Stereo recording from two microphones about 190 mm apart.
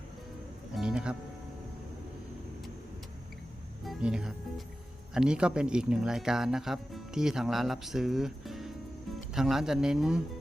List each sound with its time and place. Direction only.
0.8 s music: 5° right (ahead or behind)
3.8 s music: 5° right (ahead or behind)
5.1 s speech: 5° right (ahead or behind)